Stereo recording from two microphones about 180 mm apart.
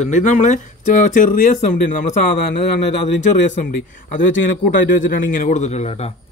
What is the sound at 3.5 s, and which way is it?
A man's voice, 45° left (ahead or behind).